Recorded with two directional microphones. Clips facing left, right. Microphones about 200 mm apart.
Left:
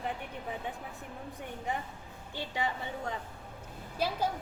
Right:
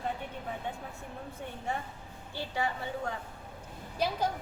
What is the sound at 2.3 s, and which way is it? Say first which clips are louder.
Speech: right 1 dB; 20° left (ahead or behind).